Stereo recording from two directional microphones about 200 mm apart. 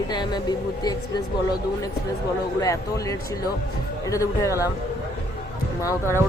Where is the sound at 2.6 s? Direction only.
15° left (ahead or behind).